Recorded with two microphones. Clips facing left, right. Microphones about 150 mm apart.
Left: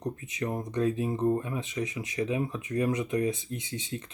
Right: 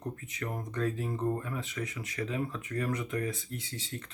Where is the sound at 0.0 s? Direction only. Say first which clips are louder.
Left 5 dB; 15° left (ahead or behind).